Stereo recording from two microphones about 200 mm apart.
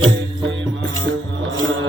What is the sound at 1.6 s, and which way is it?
Music, 70° right (ahead or behind).